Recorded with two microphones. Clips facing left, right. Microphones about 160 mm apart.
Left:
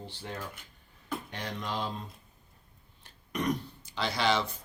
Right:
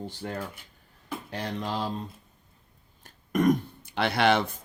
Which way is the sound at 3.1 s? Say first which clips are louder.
Right 9 dB; 50° right (ahead or behind).